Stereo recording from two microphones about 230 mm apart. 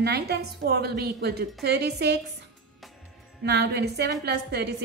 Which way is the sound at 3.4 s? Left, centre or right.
Right.